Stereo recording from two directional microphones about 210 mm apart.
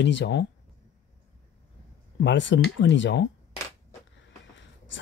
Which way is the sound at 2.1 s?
60° left (ahead or behind).